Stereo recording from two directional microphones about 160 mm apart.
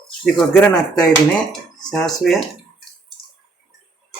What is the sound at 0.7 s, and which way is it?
Speech, 25° left (ahead or behind).